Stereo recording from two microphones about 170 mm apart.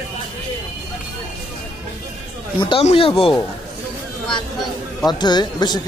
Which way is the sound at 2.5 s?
25° left (ahead or behind).